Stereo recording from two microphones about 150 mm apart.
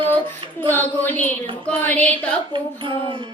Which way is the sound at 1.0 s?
10° left (ahead or behind).